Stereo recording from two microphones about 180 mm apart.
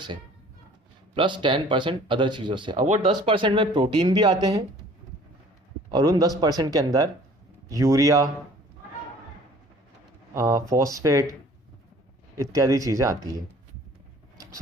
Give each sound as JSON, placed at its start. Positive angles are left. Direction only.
{"t": 1.1, "sound": "speech", "side_deg": -25}
{"t": 2.7, "sound": "speech", "side_deg": -45}
{"t": 3.2, "sound": "speech", "side_deg": -30}
{"t": 5.9, "sound": "speech", "side_deg": -20}
{"t": 10.3, "sound": "speech", "side_deg": -20}
{"t": 12.4, "sound": "speech", "side_deg": -20}